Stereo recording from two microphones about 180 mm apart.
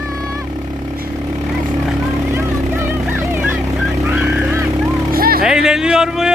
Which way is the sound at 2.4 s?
10° right (ahead or behind).